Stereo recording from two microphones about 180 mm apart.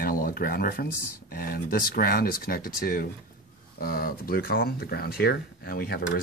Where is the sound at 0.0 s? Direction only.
55° left (ahead or behind).